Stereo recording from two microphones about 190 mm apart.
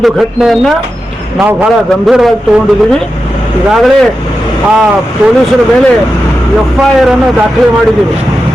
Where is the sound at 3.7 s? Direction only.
Centre (ahead or behind).